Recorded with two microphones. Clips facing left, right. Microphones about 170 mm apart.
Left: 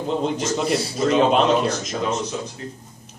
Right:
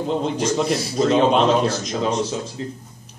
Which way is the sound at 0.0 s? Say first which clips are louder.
Right 1 dB; centre (ahead or behind).